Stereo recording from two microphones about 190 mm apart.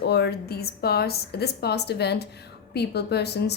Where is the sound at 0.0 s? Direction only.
60° left (ahead or behind).